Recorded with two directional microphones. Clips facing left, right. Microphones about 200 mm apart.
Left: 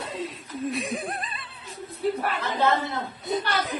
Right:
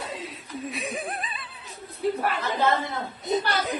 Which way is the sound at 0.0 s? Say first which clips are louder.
Left 3 dB; centre (ahead or behind).